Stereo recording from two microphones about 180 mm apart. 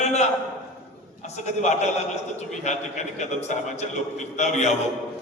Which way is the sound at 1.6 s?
40° left (ahead or behind).